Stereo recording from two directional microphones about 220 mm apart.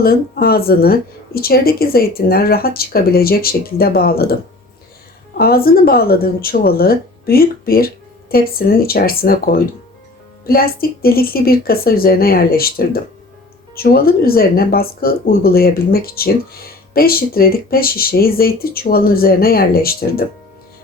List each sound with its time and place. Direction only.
0.0 s speech: 45° left (ahead or behind)